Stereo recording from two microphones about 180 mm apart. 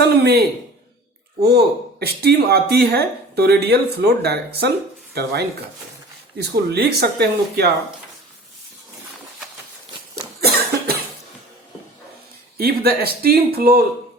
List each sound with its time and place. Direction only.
0.0 s a sound: 65° right (ahead or behind)
1.4 s speech: 65° right (ahead or behind)
12.5 s speech: 60° right (ahead or behind)